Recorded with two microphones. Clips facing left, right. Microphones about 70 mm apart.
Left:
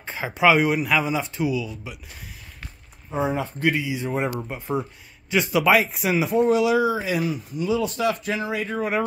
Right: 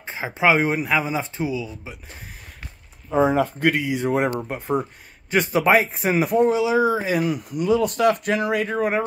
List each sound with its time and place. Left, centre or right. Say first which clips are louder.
0.0 s speech: left 1 dB; centre
3.1 s speech: right 6 dB; right
5.3 s speech: right 1 dB; right
6.5 s a man's voice: even; right
8.6 s speech: right 4 dB; right